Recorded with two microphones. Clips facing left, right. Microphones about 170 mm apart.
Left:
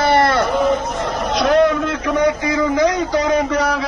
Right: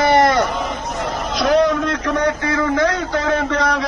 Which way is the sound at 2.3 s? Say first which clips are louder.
Left 1 dB; 15° left (ahead or behind).